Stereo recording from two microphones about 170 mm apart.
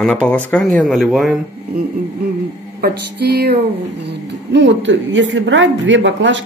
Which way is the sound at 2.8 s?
70° right (ahead or behind).